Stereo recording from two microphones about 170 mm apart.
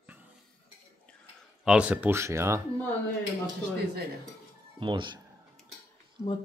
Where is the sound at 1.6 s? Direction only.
5° right (ahead or behind).